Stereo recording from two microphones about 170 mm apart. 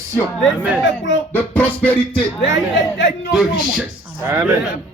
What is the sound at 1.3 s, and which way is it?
Music, 10° left (ahead or behind).